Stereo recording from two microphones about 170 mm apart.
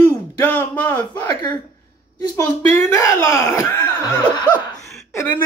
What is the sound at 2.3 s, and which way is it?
Speech, 15° left (ahead or behind).